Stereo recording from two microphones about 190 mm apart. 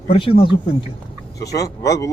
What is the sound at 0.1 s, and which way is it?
Speech, 30° left (ahead or behind).